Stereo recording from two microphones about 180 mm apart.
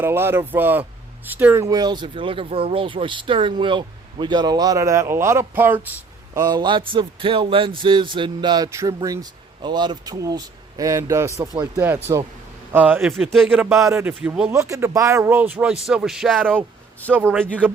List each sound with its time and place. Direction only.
0.0 s speech: 15° right (ahead or behind)
12.7 s speech: 10° right (ahead or behind)
13.5 s a man's voice: 10° right (ahead or behind)
17.1 s a man's voice: 10° right (ahead or behind)